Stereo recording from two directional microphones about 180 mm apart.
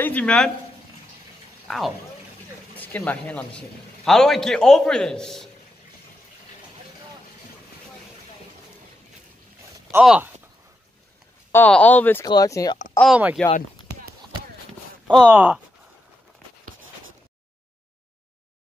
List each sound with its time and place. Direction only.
0.0 s speech: 10° left (ahead or behind)
1.7 s a man's voice: centre (ahead or behind)
10.0 s a man's voice: 5° right (ahead or behind)
11.5 s speech: 10° left (ahead or behind)
13.0 s a man's voice: 5° right (ahead or behind)
15.2 s a man's voice: 5° right (ahead or behind)